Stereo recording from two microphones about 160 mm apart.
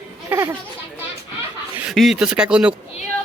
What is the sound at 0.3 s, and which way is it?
Children playing, 15° right (ahead or behind).